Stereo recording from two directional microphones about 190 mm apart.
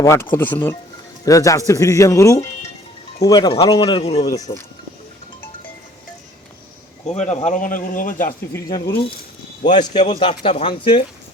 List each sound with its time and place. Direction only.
0.0 s speech: 15° left (ahead or behind); by 4.3 s 30° left (ahead or behind)
4.3 s speech: 20° left (ahead or behind)
7.1 s speech: 35° left (ahead or behind)
8.5 s speech: 20° left (ahead or behind)
10.0 s speech: 30° left (ahead or behind)